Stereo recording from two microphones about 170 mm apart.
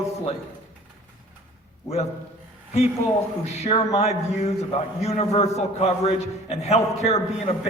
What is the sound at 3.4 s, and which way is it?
A man's voice, 40° left (ahead or behind).